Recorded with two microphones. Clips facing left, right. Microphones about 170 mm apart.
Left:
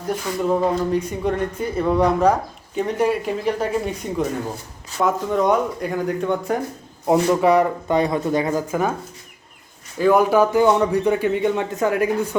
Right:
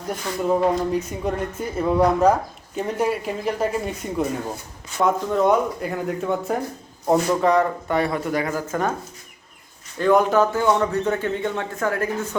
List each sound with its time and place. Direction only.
0.3 s a man's voice: 10° left (ahead or behind)
0.8 s speech: 5° right (ahead or behind)
7.1 s speech: 10° left (ahead or behind)
10.0 s a man's voice: 10° left (ahead or behind)